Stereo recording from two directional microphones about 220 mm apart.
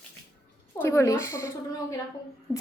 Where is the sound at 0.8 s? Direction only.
10° left (ahead or behind).